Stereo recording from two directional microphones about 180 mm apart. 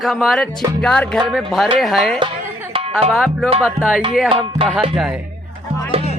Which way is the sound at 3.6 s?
5° right (ahead or behind).